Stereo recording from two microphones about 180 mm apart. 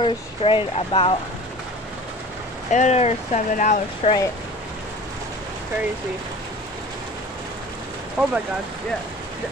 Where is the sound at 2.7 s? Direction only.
40° left (ahead or behind).